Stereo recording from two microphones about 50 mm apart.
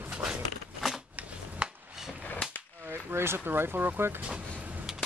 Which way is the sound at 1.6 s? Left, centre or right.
Centre.